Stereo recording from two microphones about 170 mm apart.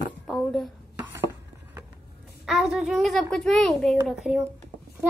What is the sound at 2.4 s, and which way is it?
A child's voice, centre (ahead or behind).